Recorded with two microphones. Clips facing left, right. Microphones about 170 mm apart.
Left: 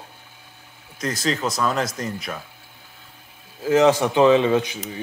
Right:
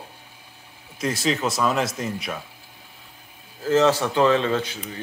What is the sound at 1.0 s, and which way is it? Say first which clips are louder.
Speech: right 1 dB; 5° right (ahead or behind).